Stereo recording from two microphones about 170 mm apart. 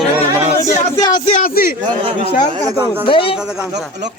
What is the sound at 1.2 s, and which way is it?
Speech, 45° left (ahead or behind).